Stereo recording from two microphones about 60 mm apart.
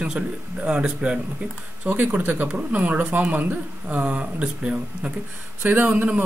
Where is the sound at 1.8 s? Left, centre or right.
Right.